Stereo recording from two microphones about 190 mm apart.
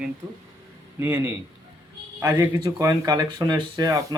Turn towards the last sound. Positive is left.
turn(degrees=-20)  # may be behind; listen again after turning